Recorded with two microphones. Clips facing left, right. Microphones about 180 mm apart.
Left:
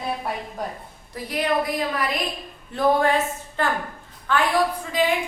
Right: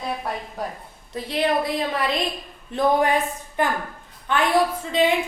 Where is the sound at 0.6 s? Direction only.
Centre (ahead or behind).